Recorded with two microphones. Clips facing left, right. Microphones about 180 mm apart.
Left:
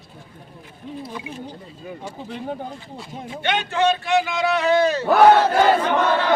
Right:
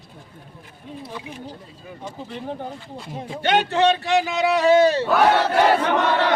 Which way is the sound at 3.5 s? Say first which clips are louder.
Right 2 dB; 35° right (ahead or behind).